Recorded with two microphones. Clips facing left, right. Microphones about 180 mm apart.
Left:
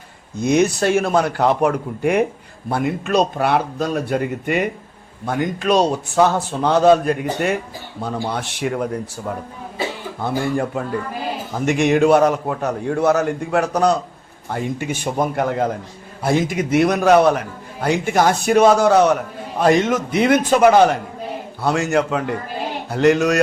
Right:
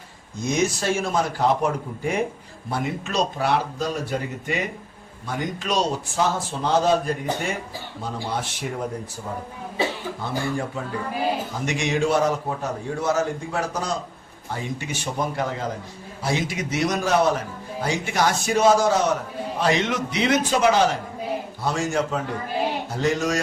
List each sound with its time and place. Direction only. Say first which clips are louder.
0.3 s a man's voice: left 7 dB; 60° left (ahead or behind)
10.2 s a man's voice: left 8 dB; 55° left (ahead or behind)
14.5 s a man's voice: left 6 dB; 55° left (ahead or behind)
19.5 s a man's voice: left 7 dB; 50° left (ahead or behind)
21.6 s a man's voice: left 7 dB; 65° left (ahead or behind)